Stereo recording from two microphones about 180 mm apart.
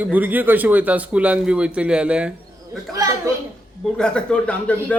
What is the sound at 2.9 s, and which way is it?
Speech, 20° right (ahead or behind).